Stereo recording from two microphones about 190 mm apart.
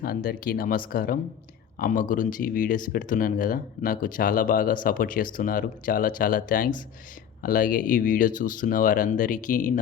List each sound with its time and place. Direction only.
0.0 s speech: 50° left (ahead or behind)